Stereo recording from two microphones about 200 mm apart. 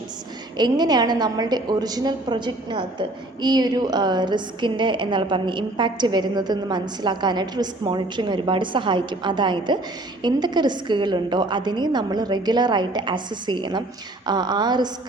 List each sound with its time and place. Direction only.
0.5 s a woman's voice: 20° right (ahead or behind)